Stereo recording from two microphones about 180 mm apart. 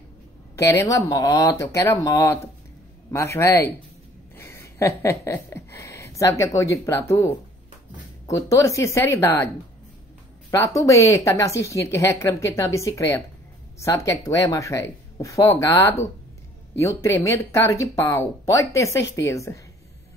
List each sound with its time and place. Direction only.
0.6 s speech: 15° left (ahead or behind)
10.5 s speech: 15° left (ahead or behind)